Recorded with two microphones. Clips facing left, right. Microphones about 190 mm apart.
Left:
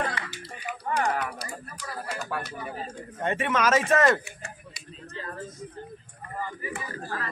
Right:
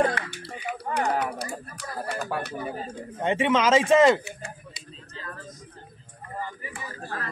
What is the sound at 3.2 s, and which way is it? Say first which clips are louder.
Speech: right 4 dB; 20° right (ahead or behind).